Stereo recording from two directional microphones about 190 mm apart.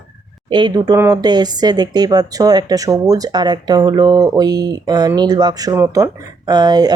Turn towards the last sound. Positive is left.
turn(degrees=-20)  # may be behind; listen again after turning